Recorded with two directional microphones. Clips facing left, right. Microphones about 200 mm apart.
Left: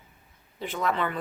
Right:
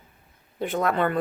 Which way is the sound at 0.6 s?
55° right (ahead or behind).